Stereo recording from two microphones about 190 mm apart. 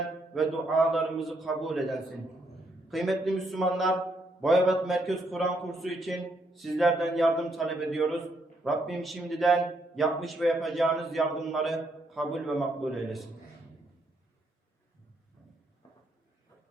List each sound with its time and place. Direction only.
0.3 s a man's voice: centre (ahead or behind)